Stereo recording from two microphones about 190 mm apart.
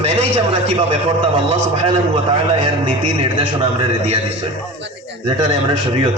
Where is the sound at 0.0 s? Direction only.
35° right (ahead or behind).